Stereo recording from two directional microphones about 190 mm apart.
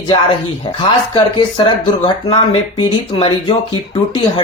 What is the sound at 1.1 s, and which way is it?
Speech, 25° left (ahead or behind).